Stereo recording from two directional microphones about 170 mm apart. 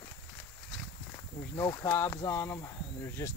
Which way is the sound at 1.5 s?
15° left (ahead or behind).